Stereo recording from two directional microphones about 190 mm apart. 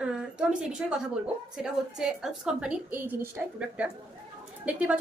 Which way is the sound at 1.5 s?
5° right (ahead or behind).